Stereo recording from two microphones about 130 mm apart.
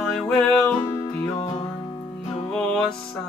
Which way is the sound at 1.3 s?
45° left (ahead or behind).